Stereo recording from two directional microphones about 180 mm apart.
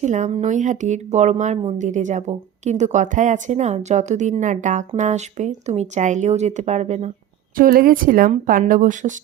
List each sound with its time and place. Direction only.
0.0 s speech: 40° right (ahead or behind)
7.5 s speech: 50° right (ahead or behind)